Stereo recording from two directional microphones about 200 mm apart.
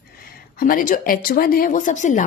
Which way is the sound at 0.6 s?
45° left (ahead or behind).